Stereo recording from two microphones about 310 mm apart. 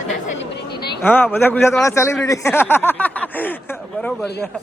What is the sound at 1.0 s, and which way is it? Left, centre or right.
Speech, centre.